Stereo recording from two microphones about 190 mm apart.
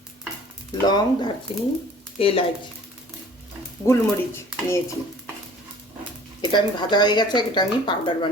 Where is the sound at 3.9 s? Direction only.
15° left (ahead or behind).